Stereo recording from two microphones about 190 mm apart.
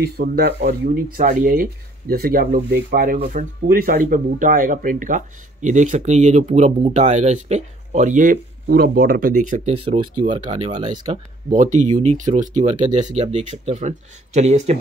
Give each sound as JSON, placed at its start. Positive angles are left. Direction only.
{"t": 0.0, "sound": "speech", "side_deg": -55}
{"t": 9.8, "sound": "speech", "side_deg": -25}
{"t": 11.5, "sound": "speech", "side_deg": -40}